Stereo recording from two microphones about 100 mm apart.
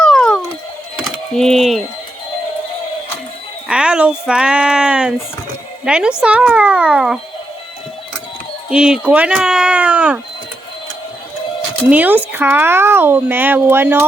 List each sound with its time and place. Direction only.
0.0 s a sound: 5° left (ahead or behind)
1.4 s speech: 5° left (ahead or behind)
3.7 s speech: 10° right (ahead or behind)
8.7 s speech: 10° right (ahead or behind)
11.9 s speech: 15° right (ahead or behind)